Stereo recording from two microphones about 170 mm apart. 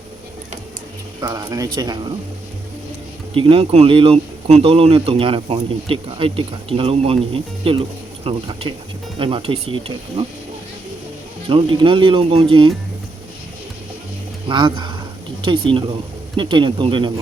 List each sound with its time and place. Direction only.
1.2 s speech: 20° right (ahead or behind)
3.3 s speech: 35° right (ahead or behind)
11.4 s speech: 30° right (ahead or behind)
14.4 s speech: 30° right (ahead or behind)